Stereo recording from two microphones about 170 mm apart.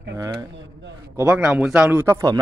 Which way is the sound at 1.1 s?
10° right (ahead or behind).